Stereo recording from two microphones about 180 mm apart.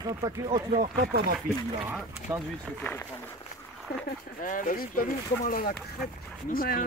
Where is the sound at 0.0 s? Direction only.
20° right (ahead or behind).